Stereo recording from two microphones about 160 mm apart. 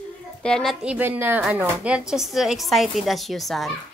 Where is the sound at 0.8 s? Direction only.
10° right (ahead or behind).